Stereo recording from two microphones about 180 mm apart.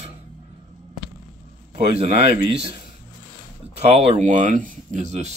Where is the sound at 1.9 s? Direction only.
35° right (ahead or behind).